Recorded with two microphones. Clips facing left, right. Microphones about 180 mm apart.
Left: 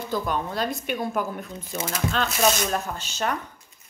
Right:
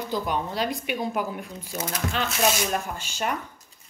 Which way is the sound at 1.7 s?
10° left (ahead or behind).